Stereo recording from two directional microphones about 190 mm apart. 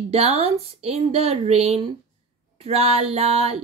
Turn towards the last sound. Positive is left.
turn(degrees=-30)  # may be behind; listen again after turning